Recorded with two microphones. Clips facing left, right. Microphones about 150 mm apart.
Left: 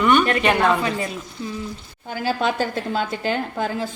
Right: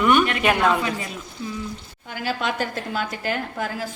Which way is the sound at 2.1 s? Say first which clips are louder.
Left 4 dB; 30° left (ahead or behind).